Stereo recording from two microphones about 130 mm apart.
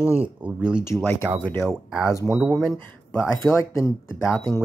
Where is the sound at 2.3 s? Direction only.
Centre (ahead or behind).